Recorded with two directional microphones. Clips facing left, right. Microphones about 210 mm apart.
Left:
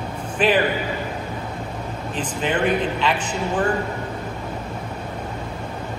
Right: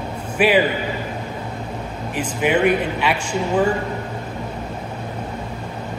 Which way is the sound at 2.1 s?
10° right (ahead or behind).